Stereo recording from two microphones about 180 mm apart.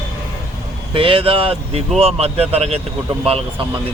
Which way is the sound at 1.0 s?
30° right (ahead or behind).